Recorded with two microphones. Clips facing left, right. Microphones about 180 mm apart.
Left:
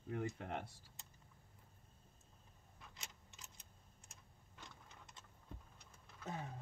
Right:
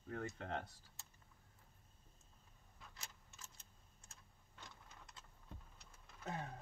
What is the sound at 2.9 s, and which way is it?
Tick-tock, 20° left (ahead or behind).